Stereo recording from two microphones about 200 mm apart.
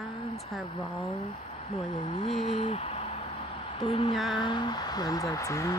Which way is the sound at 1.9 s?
30° left (ahead or behind).